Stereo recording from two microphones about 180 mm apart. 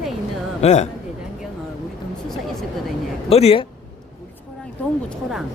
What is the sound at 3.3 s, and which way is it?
Speech, 30° left (ahead or behind).